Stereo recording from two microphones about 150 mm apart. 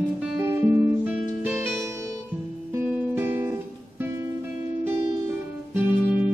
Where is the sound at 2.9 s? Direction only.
15° right (ahead or behind).